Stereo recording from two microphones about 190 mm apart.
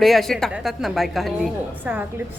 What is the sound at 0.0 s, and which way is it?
A woman's voice, centre (ahead or behind).